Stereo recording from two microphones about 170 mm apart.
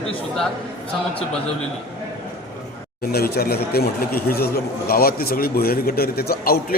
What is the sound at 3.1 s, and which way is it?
A man's voice, 65° left (ahead or behind).